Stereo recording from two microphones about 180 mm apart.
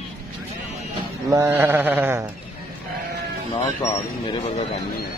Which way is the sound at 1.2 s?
15° right (ahead or behind).